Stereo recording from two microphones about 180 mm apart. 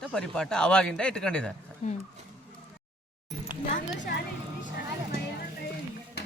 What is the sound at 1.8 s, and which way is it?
Speech, 40° left (ahead or behind).